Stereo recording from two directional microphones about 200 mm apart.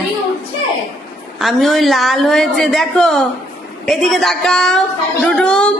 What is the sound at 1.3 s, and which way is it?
A woman's voice, centre (ahead or behind).